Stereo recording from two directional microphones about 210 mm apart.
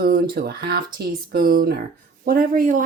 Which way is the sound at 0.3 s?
50° right (ahead or behind).